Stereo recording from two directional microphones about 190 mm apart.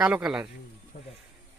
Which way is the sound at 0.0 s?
5° right (ahead or behind).